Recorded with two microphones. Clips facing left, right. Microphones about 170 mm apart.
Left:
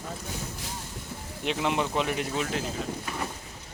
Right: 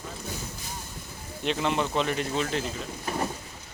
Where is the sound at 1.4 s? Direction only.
10° left (ahead or behind).